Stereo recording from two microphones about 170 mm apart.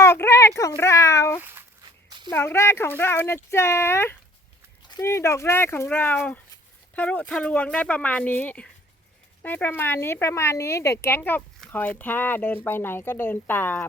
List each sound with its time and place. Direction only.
0.0 s a sound: 15° left (ahead or behind)
1.4 s speech: 10° right (ahead or behind)
1.8 s walk: 25° right (ahead or behind)
2.3 s speech: 15° left (ahead or behind)